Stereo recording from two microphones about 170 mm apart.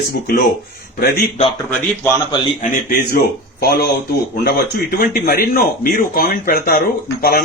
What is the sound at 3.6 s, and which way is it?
A man's voice, 65° left (ahead or behind).